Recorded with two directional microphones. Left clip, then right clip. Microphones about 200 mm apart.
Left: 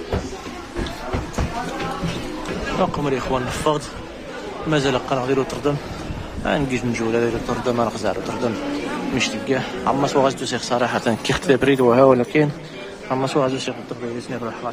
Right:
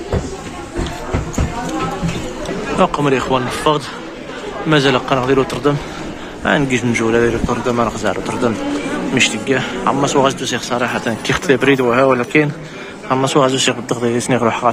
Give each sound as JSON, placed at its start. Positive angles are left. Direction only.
{"t": 2.8, "sound": "a man's voice", "side_deg": -5}
{"t": 14.3, "sound": "a man's voice", "side_deg": -25}